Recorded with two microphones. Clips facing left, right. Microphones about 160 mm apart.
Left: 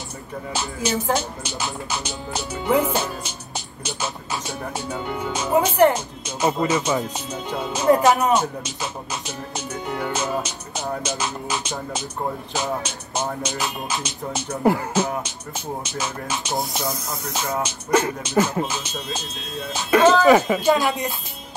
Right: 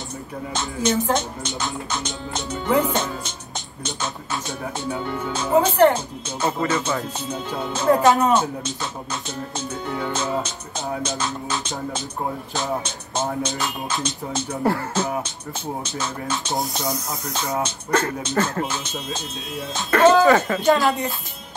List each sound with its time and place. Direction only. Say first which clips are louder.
0.5 s speech: right 2 dB; 10° left (ahead or behind)
13.8 s speech: right 1 dB; 10° left (ahead or behind)
16.5 s speech: even; centre (ahead or behind)
19.8 s speech: right 1 dB; 15° left (ahead or behind)